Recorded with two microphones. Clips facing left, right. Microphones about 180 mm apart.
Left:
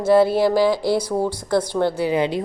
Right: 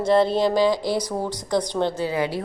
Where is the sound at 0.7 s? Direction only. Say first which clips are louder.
Left 4 dB; 15° right (ahead or behind).